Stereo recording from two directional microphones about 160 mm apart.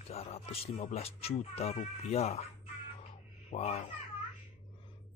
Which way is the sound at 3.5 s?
40° left (ahead or behind).